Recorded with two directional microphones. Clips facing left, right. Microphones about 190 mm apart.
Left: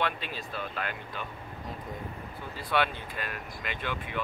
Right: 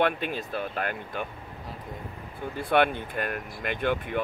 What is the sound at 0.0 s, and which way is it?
Speech, 50° right (ahead or behind).